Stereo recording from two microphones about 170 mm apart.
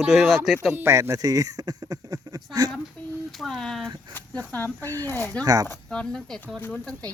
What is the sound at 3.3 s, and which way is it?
Speech, centre (ahead or behind).